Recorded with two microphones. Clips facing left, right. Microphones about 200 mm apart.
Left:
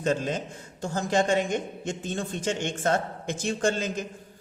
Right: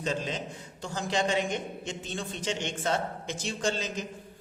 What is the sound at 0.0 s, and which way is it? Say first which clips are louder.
A man's voice: left 5 dB; 50° left (ahead or behind).